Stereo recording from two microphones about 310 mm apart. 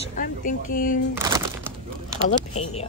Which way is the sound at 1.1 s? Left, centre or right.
Centre.